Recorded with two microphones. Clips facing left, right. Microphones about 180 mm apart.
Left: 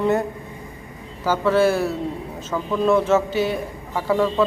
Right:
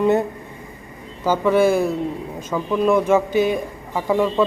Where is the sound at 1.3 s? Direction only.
15° right (ahead or behind).